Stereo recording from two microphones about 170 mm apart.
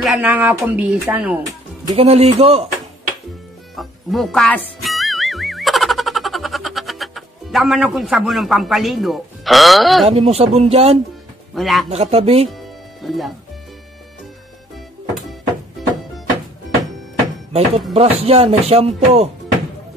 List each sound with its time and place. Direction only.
0.0 s speech: 5° right (ahead or behind)
2.0 s speech: 35° right (ahead or behind)
3.7 s music: centre (ahead or behind)
10.0 s speech: 35° right (ahead or behind)
11.5 s a man's voice: centre (ahead or behind)
11.9 s speech: 35° right (ahead or behind)
12.4 s music: centre (ahead or behind)
15.8 s music: centre (ahead or behind)
17.5 s speech: 40° right (ahead or behind)